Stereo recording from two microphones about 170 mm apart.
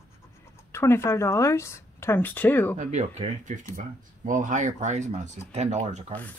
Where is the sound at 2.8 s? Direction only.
40° right (ahead or behind).